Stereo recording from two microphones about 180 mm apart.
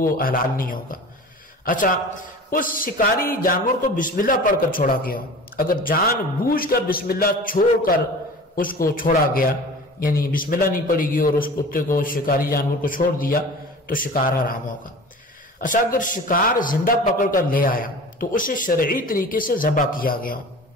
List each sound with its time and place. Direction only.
0.0 s a man's voice: 50° left (ahead or behind)
15.6 s a man's voice: 45° left (ahead or behind)